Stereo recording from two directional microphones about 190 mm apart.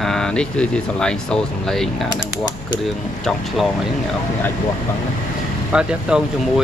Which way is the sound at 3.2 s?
Centre (ahead or behind).